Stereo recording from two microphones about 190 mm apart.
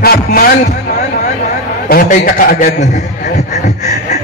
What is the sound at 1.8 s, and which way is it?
A man's voice, 50° left (ahead or behind).